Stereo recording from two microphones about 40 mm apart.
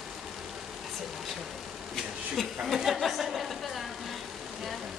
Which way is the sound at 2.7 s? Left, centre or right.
Centre.